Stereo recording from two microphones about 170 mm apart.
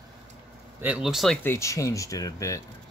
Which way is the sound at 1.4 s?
15° left (ahead or behind).